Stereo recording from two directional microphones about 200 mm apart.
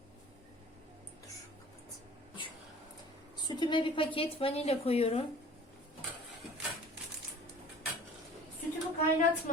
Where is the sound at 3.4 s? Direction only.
25° left (ahead or behind).